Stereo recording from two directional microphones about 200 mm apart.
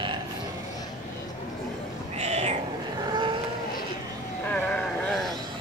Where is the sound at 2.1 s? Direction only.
35° right (ahead or behind).